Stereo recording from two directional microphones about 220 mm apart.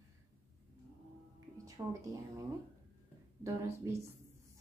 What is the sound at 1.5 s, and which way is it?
Speech, 15° right (ahead or behind).